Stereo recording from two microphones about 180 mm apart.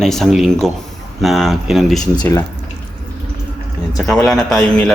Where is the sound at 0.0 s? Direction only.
Centre (ahead or behind).